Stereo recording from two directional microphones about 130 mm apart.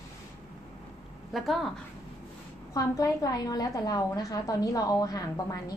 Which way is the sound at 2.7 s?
25° left (ahead or behind).